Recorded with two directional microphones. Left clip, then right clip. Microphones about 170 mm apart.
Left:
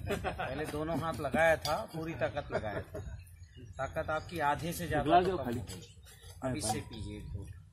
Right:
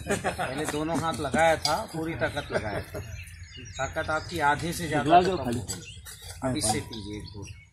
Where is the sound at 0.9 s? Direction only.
5° left (ahead or behind).